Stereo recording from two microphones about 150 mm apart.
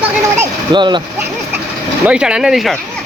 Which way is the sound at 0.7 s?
30° right (ahead or behind).